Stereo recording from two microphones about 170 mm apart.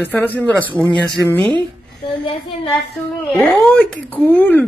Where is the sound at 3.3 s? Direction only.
10° left (ahead or behind).